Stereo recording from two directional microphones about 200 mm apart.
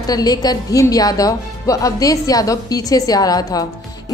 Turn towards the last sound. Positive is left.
turn(degrees=20)  # may be behind; listen again after turning